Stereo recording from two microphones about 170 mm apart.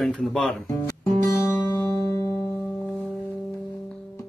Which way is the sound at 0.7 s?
20° left (ahead or behind).